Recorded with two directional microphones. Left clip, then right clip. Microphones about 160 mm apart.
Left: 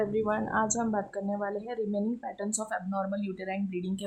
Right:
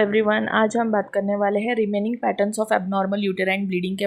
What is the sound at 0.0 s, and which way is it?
Speech, 25° right (ahead or behind).